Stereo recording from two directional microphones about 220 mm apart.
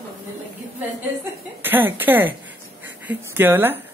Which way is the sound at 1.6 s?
10° right (ahead or behind).